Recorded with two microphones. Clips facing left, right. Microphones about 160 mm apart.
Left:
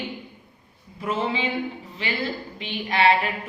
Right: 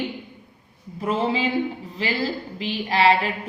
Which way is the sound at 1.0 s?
35° right (ahead or behind).